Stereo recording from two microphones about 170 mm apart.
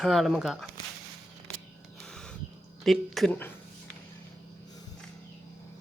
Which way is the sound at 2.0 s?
5° left (ahead or behind).